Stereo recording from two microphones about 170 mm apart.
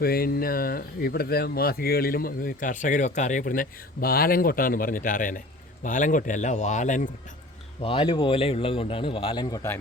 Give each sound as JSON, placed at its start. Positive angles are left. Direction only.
{"t": 0.0, "sound": "a man's voice", "side_deg": 60}
{"t": 7.8, "sound": "speech", "side_deg": 30}